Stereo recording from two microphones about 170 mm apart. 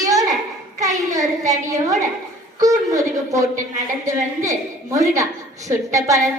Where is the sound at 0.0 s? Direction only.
20° right (ahead or behind).